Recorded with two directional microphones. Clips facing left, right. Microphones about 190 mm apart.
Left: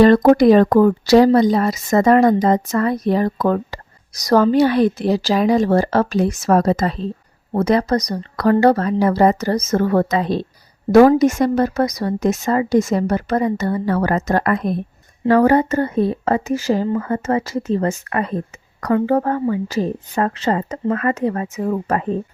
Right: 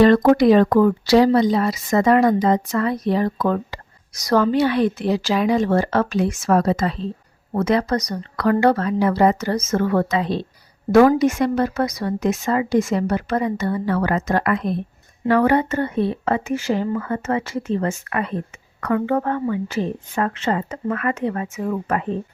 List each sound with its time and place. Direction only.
0.0 s a woman's voice: 40° left (ahead or behind)